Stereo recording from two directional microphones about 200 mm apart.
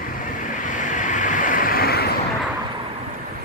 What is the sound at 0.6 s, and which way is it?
Vehicle, 40° left (ahead or behind).